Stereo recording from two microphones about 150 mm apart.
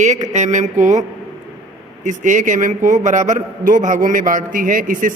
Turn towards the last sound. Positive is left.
turn(degrees=-65)  # may be behind; listen again after turning